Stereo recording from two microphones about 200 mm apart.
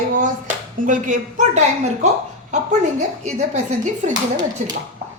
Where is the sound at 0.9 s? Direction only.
40° right (ahead or behind).